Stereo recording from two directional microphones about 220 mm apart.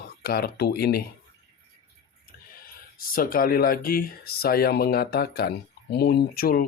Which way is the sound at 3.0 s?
40° left (ahead or behind).